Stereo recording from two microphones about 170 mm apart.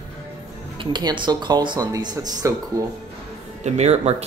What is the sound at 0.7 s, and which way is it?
Speech, 30° right (ahead or behind).